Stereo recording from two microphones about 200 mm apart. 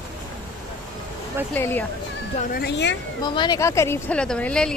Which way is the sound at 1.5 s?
10° left (ahead or behind).